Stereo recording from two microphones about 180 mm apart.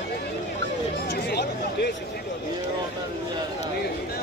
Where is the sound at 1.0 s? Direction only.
65° left (ahead or behind).